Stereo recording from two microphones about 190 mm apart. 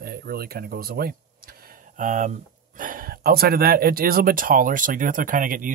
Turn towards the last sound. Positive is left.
turn(degrees=-45)  # may be behind; listen again after turning